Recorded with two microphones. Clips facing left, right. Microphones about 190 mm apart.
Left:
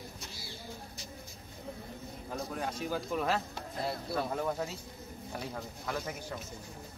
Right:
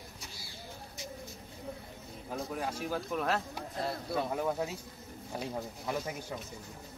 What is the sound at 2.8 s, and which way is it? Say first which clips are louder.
Speech: left 2 dB; centre (ahead or behind).